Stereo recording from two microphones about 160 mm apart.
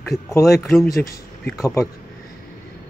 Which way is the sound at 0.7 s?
Centre (ahead or behind).